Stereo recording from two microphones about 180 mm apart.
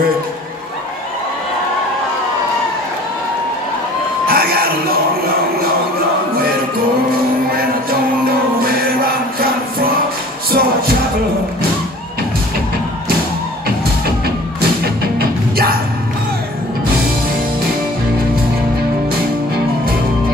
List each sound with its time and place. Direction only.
4.3 s music: 55° right (ahead or behind)
7.5 s music: 55° right (ahead or behind)
13.7 s music: 60° right (ahead or behind)